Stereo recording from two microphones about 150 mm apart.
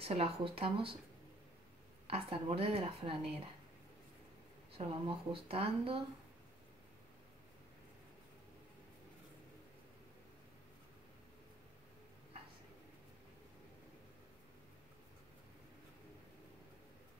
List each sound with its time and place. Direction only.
0.0 s speech: 40° right (ahead or behind)
2.0 s speech: 40° right (ahead or behind)
4.7 s speech: 40° right (ahead or behind)